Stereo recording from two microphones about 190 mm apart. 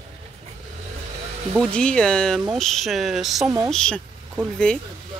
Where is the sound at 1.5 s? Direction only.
5° left (ahead or behind).